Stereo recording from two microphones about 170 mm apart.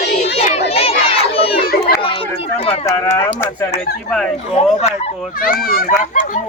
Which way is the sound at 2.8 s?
20° left (ahead or behind).